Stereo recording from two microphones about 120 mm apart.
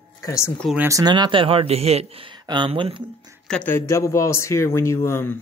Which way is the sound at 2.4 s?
40° right (ahead or behind).